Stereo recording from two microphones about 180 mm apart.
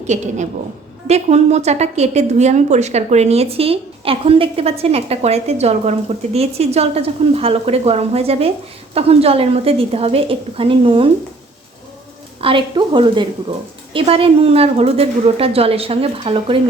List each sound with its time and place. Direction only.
0.1 s a woman's voice: 40° right (ahead or behind)
12.4 s a woman's voice: 30° right (ahead or behind)